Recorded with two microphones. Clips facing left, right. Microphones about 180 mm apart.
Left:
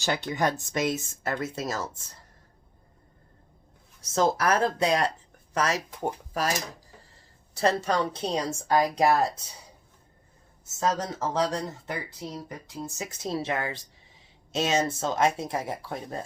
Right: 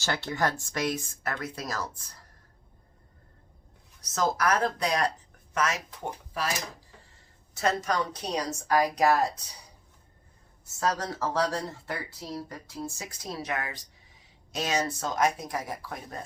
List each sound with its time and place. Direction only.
0.0 s speech: 15° left (ahead or behind)
4.0 s speech: 25° left (ahead or behind); by 6.5 s 45° left (ahead or behind)
7.5 s speech: 30° left (ahead or behind)
10.8 s speech: 20° left (ahead or behind)